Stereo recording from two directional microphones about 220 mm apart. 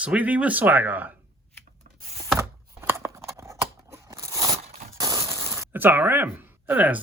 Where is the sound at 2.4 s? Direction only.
10° right (ahead or behind).